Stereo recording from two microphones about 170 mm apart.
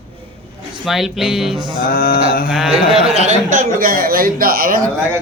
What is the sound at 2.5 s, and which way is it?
Speech, centre (ahead or behind).